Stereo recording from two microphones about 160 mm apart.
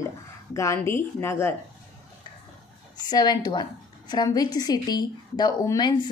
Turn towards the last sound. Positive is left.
turn(degrees=25)  # may be behind; listen again after turning